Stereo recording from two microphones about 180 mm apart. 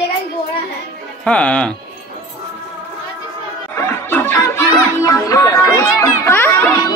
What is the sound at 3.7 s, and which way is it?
Snicker, 15° left (ahead or behind).